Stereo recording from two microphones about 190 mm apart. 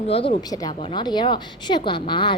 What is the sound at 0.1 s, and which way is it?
A woman's voice, 30° left (ahead or behind).